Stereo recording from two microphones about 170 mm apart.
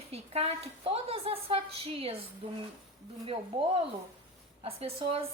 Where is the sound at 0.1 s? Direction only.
35° right (ahead or behind).